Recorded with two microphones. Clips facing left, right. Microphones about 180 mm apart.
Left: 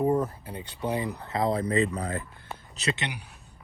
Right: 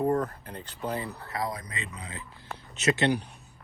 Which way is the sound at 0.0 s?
10° left (ahead or behind).